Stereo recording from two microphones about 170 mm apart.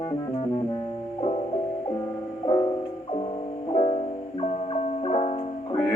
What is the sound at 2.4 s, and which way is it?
Music, 25° left (ahead or behind).